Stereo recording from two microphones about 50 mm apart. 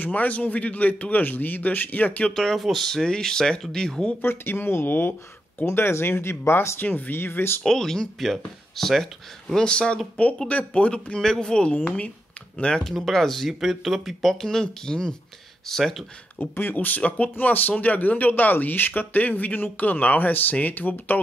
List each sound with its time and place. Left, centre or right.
0.0 s speech: left
2.3 s speech: centre
4.2 s speech: left
5.7 s speech: left
6.8 s speech: left
7.6 s speech: centre
12.8 s speech: centre
13.5 s speech: centre
16.3 s speech: left
16.7 s speech: left